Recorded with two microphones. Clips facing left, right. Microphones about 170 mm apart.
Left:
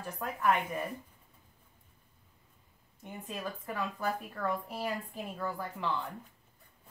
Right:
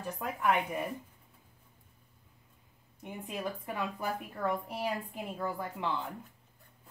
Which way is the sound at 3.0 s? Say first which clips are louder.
Right 2 dB; 20° right (ahead or behind).